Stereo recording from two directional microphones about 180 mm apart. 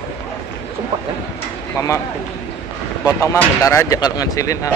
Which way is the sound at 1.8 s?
15° left (ahead or behind).